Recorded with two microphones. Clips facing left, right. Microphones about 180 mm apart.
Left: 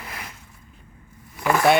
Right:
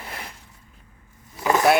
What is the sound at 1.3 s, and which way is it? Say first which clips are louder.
Vehicle: right 1 dB; 20° right (ahead or behind).